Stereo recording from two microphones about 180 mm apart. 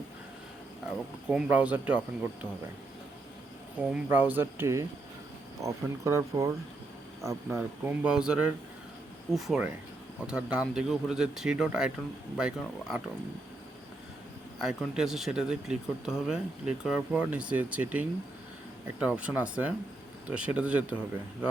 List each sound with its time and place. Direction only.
0.9 s speech: 5° right (ahead or behind)
3.8 s speech: 10° right (ahead or behind)
14.6 s speech: 5° right (ahead or behind)